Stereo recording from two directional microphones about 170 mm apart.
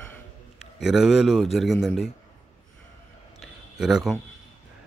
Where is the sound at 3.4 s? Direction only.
5° right (ahead or behind).